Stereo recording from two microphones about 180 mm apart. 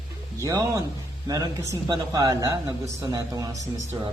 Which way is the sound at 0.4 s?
20° right (ahead or behind).